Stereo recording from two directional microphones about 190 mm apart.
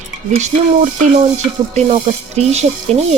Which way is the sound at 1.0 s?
35° right (ahead or behind).